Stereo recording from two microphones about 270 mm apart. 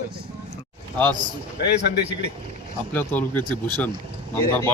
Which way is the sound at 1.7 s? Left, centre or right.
Left.